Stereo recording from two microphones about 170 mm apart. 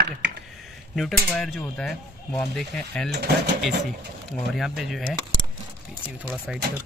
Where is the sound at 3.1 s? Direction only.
80° right.